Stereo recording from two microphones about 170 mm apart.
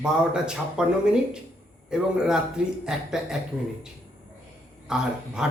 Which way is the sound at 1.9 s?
5° right (ahead or behind).